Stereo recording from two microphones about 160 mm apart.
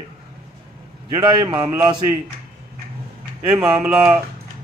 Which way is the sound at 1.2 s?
30° right (ahead or behind).